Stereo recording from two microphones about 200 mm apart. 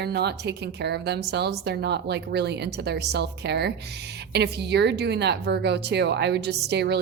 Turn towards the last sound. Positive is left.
turn(degrees=-55)  # may be behind; listen again after turning